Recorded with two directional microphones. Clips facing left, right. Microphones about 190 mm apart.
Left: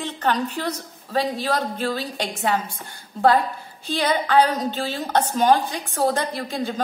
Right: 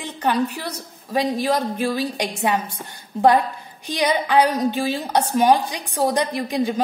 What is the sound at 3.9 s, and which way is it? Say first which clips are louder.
A woman's voice: right 1 dB; 15° right (ahead or behind).